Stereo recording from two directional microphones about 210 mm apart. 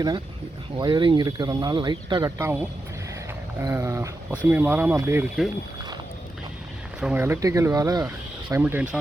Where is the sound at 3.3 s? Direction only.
15° right (ahead or behind).